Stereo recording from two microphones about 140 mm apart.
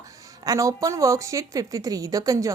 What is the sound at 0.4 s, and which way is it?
A woman's voice, 25° right (ahead or behind).